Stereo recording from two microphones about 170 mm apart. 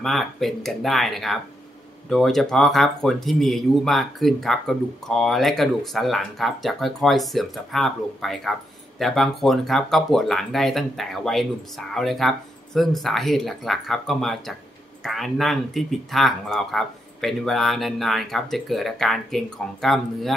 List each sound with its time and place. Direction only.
0.0 s speech: centre (ahead or behind)